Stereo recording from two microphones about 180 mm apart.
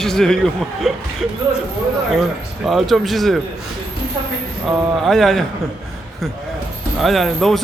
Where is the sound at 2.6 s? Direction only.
Centre (ahead or behind).